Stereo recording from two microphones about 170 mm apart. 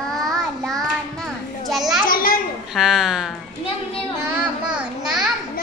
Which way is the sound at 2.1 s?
55° left (ahead or behind).